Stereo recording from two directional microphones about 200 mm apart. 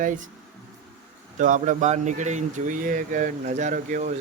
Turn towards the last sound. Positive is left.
turn(degrees=-40)  # may be behind; listen again after turning